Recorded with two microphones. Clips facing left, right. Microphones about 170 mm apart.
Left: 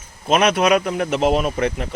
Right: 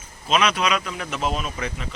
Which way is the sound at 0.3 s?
55° left (ahead or behind).